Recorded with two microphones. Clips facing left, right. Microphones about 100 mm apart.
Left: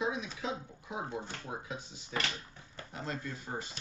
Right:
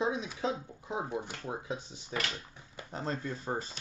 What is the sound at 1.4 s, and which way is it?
Speech, 30° right (ahead or behind).